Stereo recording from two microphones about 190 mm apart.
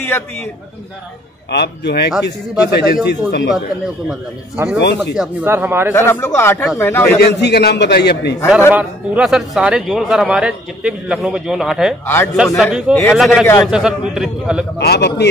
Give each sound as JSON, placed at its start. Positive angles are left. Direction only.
{"t": 1.5, "sound": "a man's voice", "side_deg": 60}
{"t": 4.1, "sound": "speech", "side_deg": -5}
{"t": 4.7, "sound": "a man's voice", "side_deg": 65}
{"t": 5.1, "sound": "speech", "side_deg": -5}
{"t": 5.9, "sound": "speech", "side_deg": 15}
{"t": 7.2, "sound": "a man's voice", "side_deg": 60}
{"t": 8.7, "sound": "speech", "side_deg": -5}
{"t": 14.8, "sound": "a man's voice", "side_deg": 60}